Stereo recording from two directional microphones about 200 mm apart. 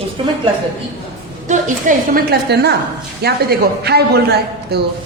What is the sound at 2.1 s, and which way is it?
A woman's voice, 55° right (ahead or behind).